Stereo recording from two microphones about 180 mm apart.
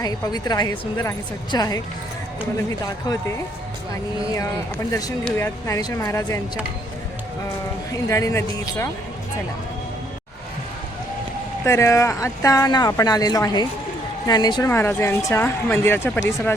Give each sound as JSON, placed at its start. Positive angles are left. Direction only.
{"t": 0.0, "sound": "speech", "side_deg": 20}
{"t": 4.9, "sound": "speech", "side_deg": 20}
{"t": 7.9, "sound": "speech", "side_deg": 15}
{"t": 11.6, "sound": "speech", "side_deg": 15}